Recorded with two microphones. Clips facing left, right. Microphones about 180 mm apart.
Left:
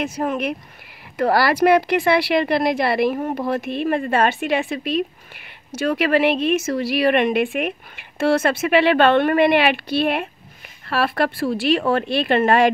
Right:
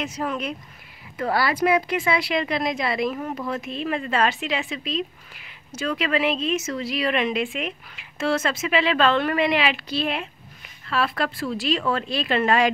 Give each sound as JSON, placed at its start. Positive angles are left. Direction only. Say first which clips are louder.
{"t": 0.0, "sound": "speech", "louder": "left 5 dB", "side_deg": 50}
{"t": 1.1, "sound": "speech", "louder": "left 6 dB", "side_deg": 75}
{"t": 3.2, "sound": "speech", "louder": "left 6 dB", "side_deg": 35}
{"t": 3.4, "sound": "speech", "louder": "left 6 dB", "side_deg": 65}